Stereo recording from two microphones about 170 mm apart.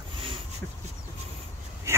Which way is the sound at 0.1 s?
30° right (ahead or behind).